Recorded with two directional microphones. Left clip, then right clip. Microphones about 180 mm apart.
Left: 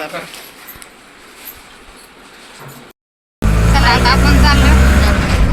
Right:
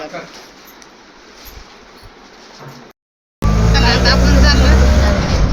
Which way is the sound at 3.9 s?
30° left (ahead or behind).